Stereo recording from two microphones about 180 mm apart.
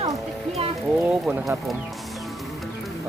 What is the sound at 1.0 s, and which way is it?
Speech, 10° right (ahead or behind).